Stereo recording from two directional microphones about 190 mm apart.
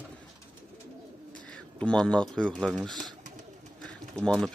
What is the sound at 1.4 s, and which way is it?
Speech, 5° left (ahead or behind).